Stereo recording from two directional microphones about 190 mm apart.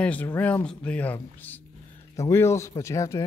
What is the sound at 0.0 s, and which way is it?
Speech, 10° left (ahead or behind).